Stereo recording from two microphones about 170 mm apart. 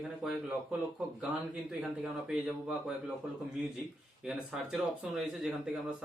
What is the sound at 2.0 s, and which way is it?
Speech, 5° right (ahead or behind).